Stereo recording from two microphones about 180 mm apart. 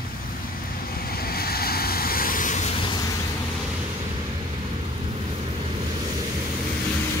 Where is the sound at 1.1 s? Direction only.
55° left (ahead or behind).